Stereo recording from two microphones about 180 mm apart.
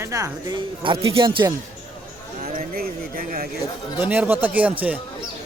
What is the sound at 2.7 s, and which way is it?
Speech, 55° right (ahead or behind).